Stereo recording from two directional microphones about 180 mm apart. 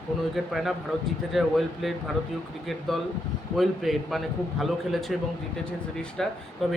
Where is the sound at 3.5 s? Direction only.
Centre (ahead or behind).